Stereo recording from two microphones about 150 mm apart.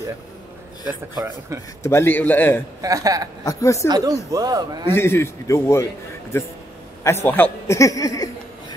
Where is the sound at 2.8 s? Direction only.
25° right (ahead or behind).